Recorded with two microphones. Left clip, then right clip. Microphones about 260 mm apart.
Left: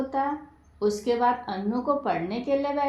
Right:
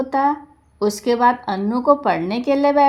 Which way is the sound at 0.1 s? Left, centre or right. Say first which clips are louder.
Right 11 dB; right.